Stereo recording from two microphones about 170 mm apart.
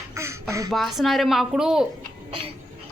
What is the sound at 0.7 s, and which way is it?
Speech, centre (ahead or behind).